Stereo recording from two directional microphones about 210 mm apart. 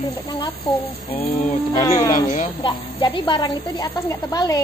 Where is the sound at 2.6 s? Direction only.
25° left (ahead or behind).